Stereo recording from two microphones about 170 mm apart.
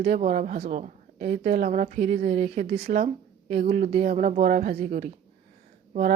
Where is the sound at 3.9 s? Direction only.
35° right (ahead or behind).